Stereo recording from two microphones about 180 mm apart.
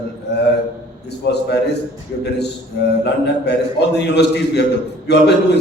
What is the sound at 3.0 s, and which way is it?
A man's voice, 70° left (ahead or behind).